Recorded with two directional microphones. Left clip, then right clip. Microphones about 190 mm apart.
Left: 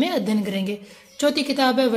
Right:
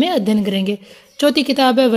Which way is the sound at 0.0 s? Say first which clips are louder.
Right 6 dB; 35° right (ahead or behind).